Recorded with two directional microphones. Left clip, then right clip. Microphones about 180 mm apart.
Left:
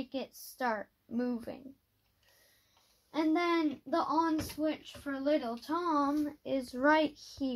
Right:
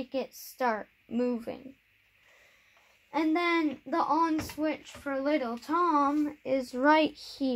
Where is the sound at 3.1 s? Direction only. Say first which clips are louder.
Right 3 dB; 20° right (ahead or behind).